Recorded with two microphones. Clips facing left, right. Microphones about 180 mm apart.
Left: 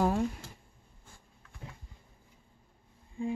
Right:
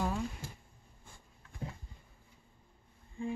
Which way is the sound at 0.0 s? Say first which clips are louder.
Left 7 dB; 50° left (ahead or behind).